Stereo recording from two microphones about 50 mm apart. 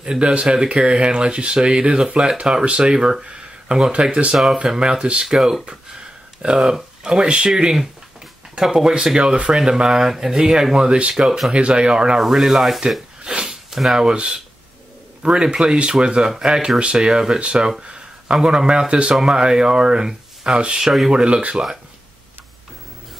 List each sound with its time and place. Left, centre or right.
0.0 s speech: right
12.2 s speech: centre
13.2 s a sound: centre
13.7 s a sound: centre
13.9 s speech: centre
19.1 s speech: centre
20.8 s speech: centre
21.1 s speech: right